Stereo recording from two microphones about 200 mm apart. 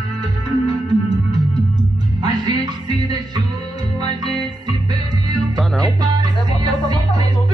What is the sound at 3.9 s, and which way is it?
Music, 20° right (ahead or behind).